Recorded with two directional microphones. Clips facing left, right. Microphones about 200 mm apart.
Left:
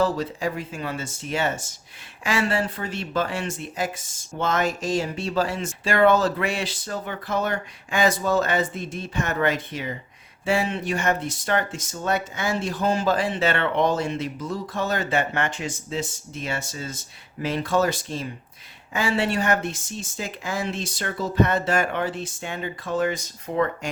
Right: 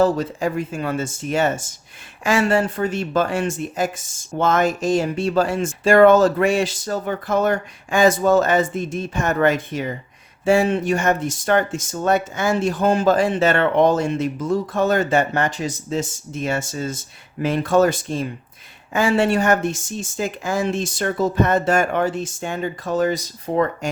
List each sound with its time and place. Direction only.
0.0 s speech: 50° right (ahead or behind)